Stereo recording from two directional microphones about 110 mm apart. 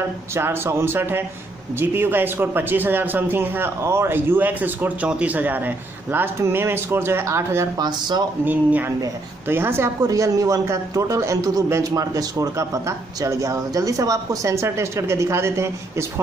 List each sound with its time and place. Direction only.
0.3 s a man's voice: 25° right (ahead or behind)
7.7 s speech: 40° right (ahead or behind)
8.5 s a man's voice: 15° right (ahead or behind)